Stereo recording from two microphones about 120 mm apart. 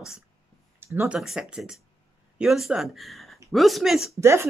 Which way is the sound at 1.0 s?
5° right (ahead or behind).